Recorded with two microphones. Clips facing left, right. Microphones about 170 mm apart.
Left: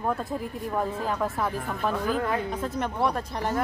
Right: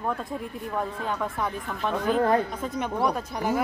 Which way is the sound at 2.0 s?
35° right (ahead or behind).